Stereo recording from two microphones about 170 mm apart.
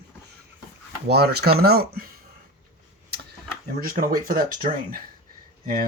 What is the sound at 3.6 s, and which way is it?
Speech, 60° right (ahead or behind).